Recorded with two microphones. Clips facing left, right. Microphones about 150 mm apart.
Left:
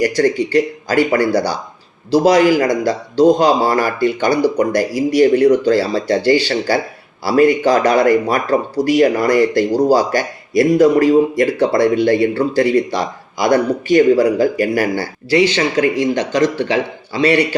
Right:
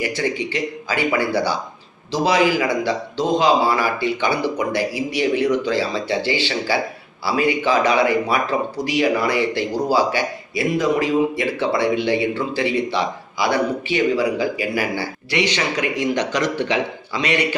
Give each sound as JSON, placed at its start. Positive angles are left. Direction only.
{"t": 0.0, "sound": "speech", "side_deg": 45}
{"t": 7.9, "sound": "speech", "side_deg": 45}
{"t": 15.3, "sound": "speech", "side_deg": 30}